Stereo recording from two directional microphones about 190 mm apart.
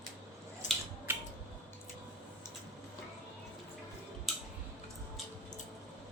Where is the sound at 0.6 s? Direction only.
40° left (ahead or behind).